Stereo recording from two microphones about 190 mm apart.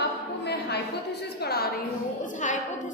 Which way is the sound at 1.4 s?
60° left (ahead or behind).